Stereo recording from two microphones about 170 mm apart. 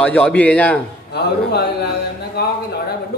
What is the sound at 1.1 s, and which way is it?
Speech, 70° left (ahead or behind).